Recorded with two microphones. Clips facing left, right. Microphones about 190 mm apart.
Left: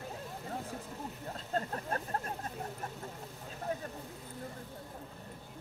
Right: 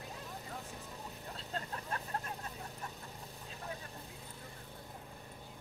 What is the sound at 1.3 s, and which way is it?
Vehicle, 45° left (ahead or behind).